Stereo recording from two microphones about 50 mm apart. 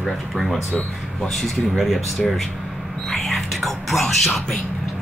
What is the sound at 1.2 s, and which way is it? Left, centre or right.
Speech, centre.